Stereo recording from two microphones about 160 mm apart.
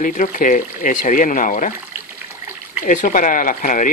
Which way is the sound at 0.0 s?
55° left (ahead or behind).